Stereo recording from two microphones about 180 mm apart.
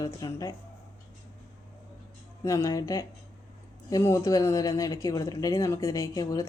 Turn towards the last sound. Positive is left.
turn(degrees=20)  # may be behind; listen again after turning